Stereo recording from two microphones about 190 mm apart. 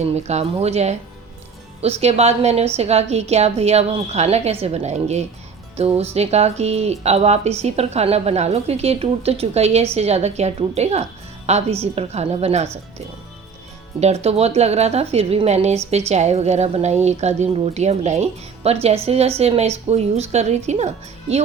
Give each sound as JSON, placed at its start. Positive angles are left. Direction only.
{"t": 0.0, "sound": "speech", "side_deg": -35}
{"t": 14.0, "sound": "speech", "side_deg": -35}